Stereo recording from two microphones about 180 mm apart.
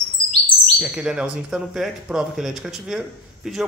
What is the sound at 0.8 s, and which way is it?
Speech, 5° right (ahead or behind).